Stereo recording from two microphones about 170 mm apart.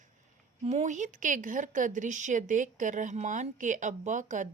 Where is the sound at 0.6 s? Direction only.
45° right (ahead or behind).